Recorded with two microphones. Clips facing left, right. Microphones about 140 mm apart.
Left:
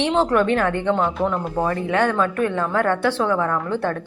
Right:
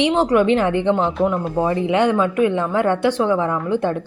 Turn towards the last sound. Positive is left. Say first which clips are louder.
# right 2 dB
turn(degrees=-15)  # may be behind; listen again after turning